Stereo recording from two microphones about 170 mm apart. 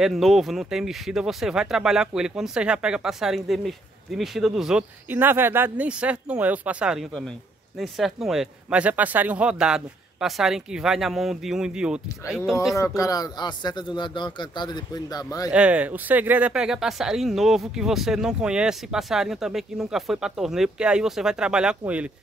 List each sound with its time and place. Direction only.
0.0 s speech: centre (ahead or behind)
12.7 s speech: 20° left (ahead or behind)
15.5 s speech: 5° right (ahead or behind)